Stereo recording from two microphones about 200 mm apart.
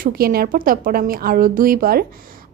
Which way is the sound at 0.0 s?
50° right (ahead or behind).